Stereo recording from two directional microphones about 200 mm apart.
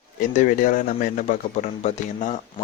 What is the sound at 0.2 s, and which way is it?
Speech, 40° left (ahead or behind).